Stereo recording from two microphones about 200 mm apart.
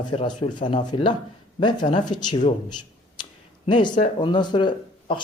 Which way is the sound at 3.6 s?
25° left (ahead or behind).